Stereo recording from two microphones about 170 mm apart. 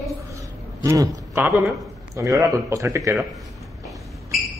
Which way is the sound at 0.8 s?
20° right (ahead or behind).